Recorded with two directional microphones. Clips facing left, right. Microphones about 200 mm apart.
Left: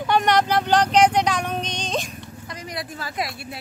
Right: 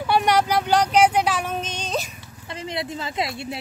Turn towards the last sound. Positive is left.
turn(degrees=-25)  # may be behind; listen again after turning